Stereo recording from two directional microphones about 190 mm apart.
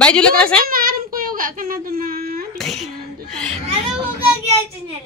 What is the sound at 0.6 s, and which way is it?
Child singing, 50° right (ahead or behind).